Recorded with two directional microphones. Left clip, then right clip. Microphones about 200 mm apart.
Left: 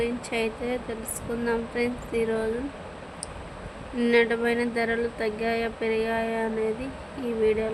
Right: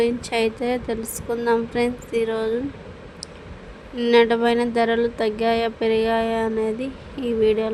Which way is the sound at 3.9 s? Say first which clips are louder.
Right 6 dB; 20° right (ahead or behind).